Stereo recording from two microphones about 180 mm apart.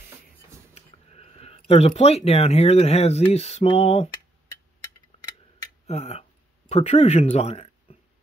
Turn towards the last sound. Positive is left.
turn(degrees=35)  # may be behind; listen again after turning